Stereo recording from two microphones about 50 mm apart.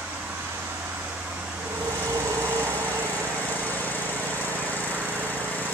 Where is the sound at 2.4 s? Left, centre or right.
Right.